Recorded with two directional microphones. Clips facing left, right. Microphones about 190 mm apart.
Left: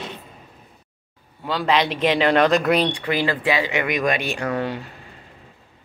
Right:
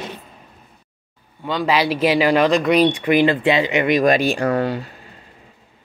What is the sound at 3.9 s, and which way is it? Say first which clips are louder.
Speech: right 10 dB; 35° right (ahead or behind).